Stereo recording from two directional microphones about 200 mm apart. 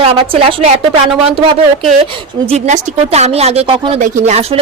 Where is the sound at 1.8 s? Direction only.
30° right (ahead or behind).